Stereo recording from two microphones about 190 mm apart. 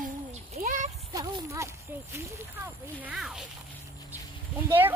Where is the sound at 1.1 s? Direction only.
15° right (ahead or behind).